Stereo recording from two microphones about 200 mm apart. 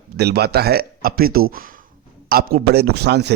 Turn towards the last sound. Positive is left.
turn(degrees=-55)  # may be behind; listen again after turning